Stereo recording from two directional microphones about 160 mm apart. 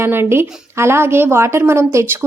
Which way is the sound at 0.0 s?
15° right (ahead or behind).